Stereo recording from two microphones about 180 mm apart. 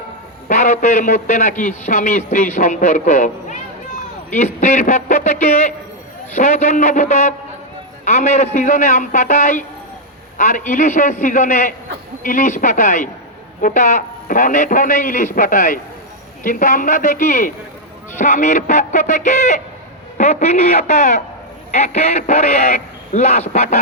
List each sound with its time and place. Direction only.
0.4 s a man's voice: 40° left (ahead or behind)